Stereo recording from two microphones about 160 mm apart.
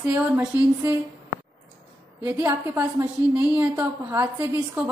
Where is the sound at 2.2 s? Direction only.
15° right (ahead or behind).